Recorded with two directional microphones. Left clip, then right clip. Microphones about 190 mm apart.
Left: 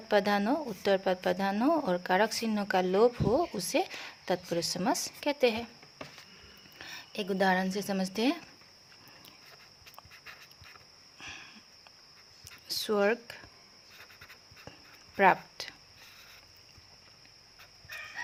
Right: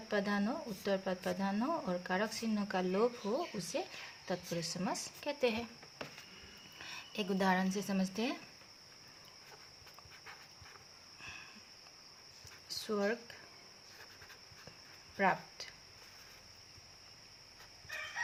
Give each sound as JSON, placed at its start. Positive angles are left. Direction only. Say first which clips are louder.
{"t": 0.1, "sound": "speech", "louder": "left 9 dB", "side_deg": 35}
{"t": 6.7, "sound": "speech", "louder": "left 3 dB", "side_deg": 15}
{"t": 11.2, "sound": "sniff", "louder": "left 5 dB", "side_deg": 25}
{"t": 12.6, "sound": "speech", "louder": "left 8 dB", "side_deg": 35}
{"t": 15.2, "sound": "a sound", "louder": "left 9 dB", "side_deg": 35}